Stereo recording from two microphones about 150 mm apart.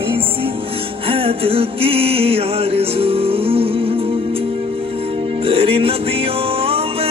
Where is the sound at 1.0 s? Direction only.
40° right (ahead or behind).